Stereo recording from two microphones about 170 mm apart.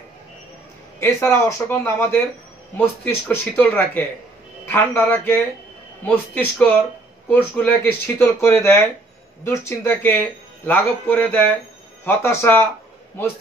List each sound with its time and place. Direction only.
0.9 s speech: 15° left (ahead or behind)